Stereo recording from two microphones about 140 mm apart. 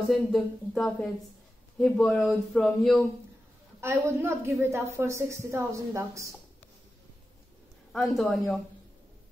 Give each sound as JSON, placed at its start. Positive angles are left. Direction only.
{"t": 0.1, "sound": "speech", "side_deg": 0}
{"t": 3.8, "sound": "a woman's voice", "side_deg": -20}
{"t": 7.9, "sound": "speech", "side_deg": 0}